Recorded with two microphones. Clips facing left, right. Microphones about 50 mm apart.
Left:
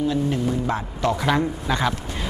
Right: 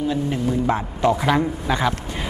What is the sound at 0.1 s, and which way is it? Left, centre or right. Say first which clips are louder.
Speech: even; centre.